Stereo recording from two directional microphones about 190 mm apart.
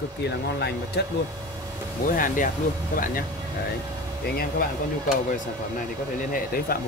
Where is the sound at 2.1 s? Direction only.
45° left (ahead or behind).